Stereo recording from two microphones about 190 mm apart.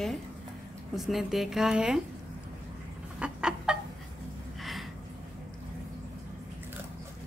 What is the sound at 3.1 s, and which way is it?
Chicken, 5° right (ahead or behind).